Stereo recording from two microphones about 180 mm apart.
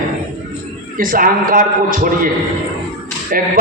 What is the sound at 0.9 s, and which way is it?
A man's voice, 50° right (ahead or behind).